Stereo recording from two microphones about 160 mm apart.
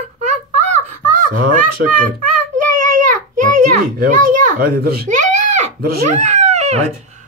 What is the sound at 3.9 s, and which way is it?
A child's voice, 60° right (ahead or behind).